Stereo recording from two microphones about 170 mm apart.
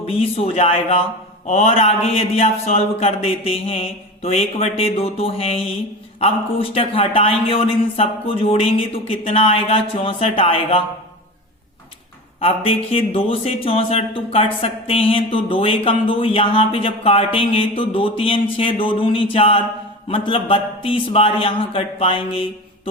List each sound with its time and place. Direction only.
0.0 s speech: 35° left (ahead or behind)
12.4 s speech: 35° left (ahead or behind)